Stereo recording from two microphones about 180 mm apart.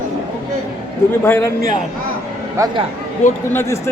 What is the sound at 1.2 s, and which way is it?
Speech, 15° left (ahead or behind).